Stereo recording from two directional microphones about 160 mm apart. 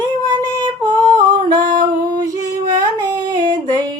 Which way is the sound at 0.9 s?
10° left (ahead or behind).